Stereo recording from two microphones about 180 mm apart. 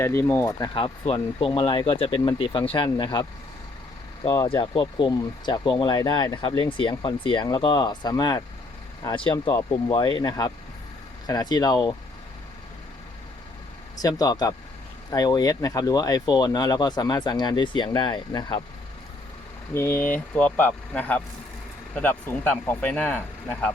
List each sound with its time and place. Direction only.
0.0 s speech: 15° left (ahead or behind)
4.4 s speech: 30° left (ahead or behind)
9.5 s speech: 15° left (ahead or behind)
13.9 s speech: 20° left (ahead or behind)
19.7 s speech: 10° left (ahead or behind)